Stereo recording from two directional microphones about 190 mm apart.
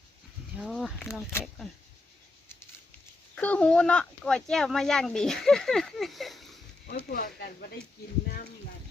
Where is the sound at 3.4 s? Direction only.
5° left (ahead or behind).